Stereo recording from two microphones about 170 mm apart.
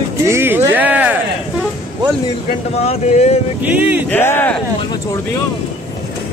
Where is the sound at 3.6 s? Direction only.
10° right (ahead or behind).